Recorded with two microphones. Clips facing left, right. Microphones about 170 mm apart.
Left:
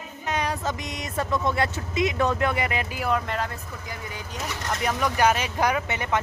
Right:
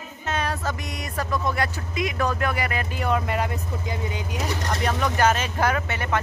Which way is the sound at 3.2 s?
15° right (ahead or behind).